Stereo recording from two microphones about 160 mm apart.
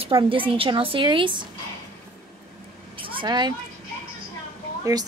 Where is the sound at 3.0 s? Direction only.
30° right (ahead or behind).